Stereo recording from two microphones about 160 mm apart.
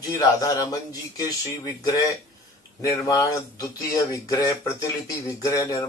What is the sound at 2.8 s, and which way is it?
Speech, 20° left (ahead or behind).